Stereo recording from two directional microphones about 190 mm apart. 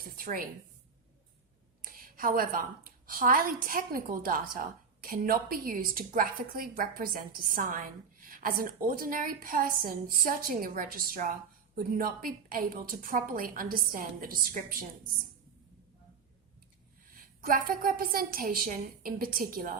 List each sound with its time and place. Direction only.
0.0 s a sound: 45° right (ahead or behind)
1.8 s a woman's voice: 50° right (ahead or behind)
17.4 s a woman's voice: 50° right (ahead or behind)